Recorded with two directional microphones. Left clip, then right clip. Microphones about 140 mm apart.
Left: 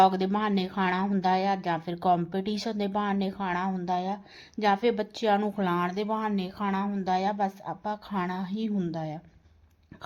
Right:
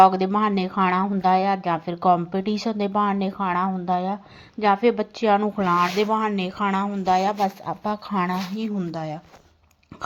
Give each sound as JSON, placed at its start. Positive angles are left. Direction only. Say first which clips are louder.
{"t": 0.0, "sound": "a woman's voice", "louder": "right 7 dB", "side_deg": -10}